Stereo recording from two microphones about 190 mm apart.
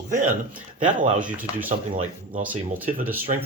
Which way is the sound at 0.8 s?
40° right (ahead or behind).